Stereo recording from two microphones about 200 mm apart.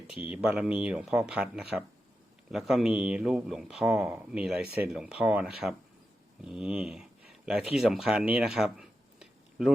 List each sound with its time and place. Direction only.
0.1 s speech: 5° right (ahead or behind)